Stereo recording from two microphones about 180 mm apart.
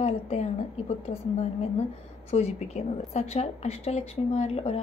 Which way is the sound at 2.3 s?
35° left (ahead or behind).